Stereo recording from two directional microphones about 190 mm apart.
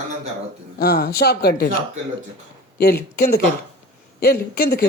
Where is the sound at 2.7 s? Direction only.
55° left (ahead or behind).